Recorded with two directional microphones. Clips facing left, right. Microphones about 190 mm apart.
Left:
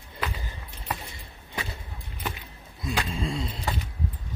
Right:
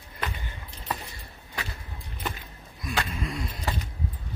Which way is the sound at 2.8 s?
25° left (ahead or behind).